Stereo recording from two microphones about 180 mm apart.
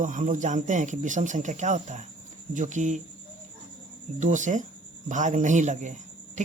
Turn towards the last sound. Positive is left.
turn(degrees=-40)  # may be behind; listen again after turning